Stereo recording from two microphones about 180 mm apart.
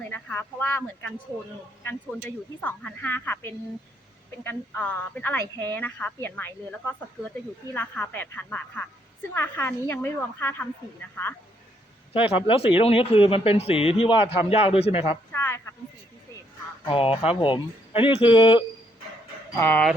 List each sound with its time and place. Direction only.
0.0 s a woman's voice: 10° left (ahead or behind)
12.1 s speech: 30° left (ahead or behind)
15.3 s a sound: 15° left (ahead or behind)
16.8 s speech: 30° left (ahead or behind)
19.5 s a woman's voice: 10° left (ahead or behind)